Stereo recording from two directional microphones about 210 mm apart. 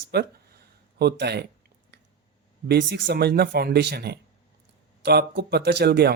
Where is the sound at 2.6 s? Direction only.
50° right (ahead or behind).